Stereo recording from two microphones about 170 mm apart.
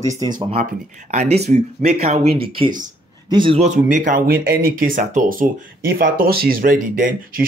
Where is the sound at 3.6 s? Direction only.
45° right (ahead or behind).